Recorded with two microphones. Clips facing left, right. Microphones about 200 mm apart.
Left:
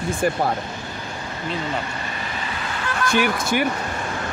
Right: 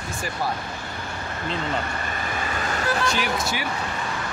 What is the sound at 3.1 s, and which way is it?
Speech, 55° left (ahead or behind).